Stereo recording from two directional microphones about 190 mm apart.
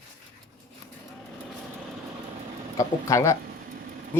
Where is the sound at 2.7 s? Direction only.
15° left (ahead or behind).